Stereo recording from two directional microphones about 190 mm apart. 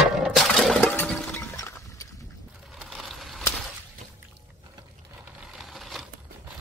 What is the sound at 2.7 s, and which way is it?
Crushing, centre (ahead or behind).